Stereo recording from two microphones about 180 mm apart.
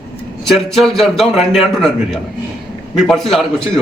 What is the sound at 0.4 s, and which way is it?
Speech, centre (ahead or behind).